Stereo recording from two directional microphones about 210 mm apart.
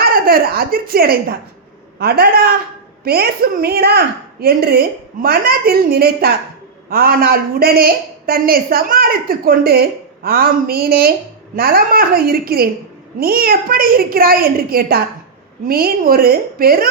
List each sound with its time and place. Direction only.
0.3 s a woman's voice: 45° right (ahead or behind)